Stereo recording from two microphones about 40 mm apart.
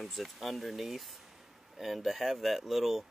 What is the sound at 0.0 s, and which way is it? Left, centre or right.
Speech, centre.